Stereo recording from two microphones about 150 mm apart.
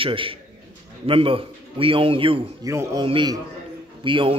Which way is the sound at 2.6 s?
20° right (ahead or behind).